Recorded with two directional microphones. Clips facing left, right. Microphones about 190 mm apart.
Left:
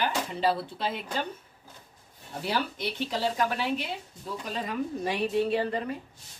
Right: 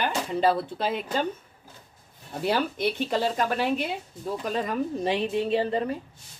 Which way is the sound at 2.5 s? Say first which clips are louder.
Right 5 dB; 50° right (ahead or behind).